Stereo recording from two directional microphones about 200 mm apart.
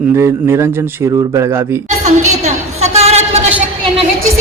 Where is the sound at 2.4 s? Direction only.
35° right (ahead or behind).